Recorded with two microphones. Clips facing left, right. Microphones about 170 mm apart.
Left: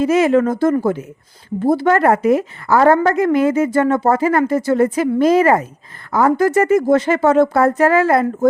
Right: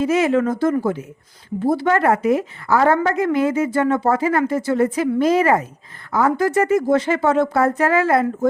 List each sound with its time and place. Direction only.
0.0 s a woman's voice: 45° left (ahead or behind)